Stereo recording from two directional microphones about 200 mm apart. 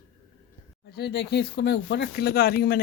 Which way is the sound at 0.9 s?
55° left (ahead or behind).